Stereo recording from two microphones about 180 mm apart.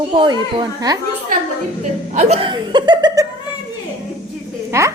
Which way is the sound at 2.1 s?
40° right (ahead or behind).